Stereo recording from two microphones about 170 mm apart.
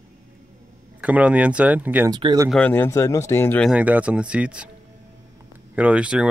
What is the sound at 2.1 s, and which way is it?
Speech, 25° right (ahead or behind).